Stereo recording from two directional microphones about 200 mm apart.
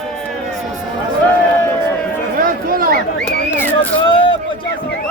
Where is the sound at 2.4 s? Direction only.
45° right (ahead or behind).